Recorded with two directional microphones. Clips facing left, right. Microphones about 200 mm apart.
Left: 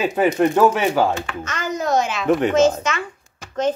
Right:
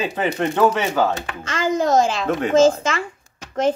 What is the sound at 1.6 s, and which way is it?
A woman's voice, 25° right (ahead or behind).